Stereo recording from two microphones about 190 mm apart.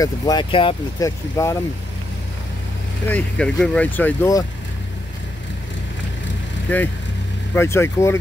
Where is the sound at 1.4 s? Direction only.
15° left (ahead or behind).